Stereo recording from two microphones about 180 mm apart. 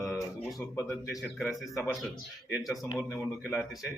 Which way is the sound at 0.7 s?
15° left (ahead or behind).